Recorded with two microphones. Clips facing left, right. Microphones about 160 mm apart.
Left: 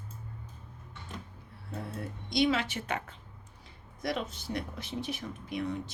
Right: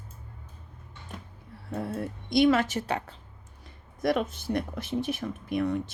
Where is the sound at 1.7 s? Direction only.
55° right (ahead or behind); by 3.1 s 35° right (ahead or behind).